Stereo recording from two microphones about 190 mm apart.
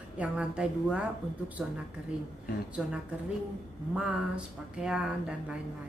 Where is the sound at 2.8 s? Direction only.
5° right (ahead or behind).